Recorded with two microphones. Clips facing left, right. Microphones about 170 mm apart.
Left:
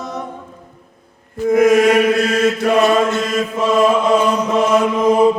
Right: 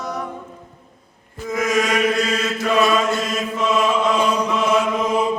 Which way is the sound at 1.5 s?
55° left (ahead or behind).